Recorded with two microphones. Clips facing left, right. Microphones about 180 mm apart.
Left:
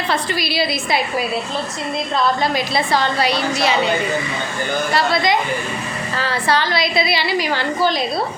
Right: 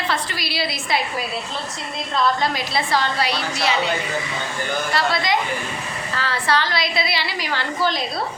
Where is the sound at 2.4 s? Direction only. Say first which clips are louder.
Left 4 dB; 15° left (ahead or behind).